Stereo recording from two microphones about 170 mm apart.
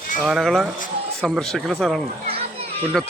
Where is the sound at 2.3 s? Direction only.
35° right (ahead or behind).